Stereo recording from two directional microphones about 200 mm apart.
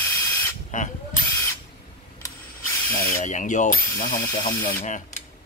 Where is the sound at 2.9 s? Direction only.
40° left (ahead or behind).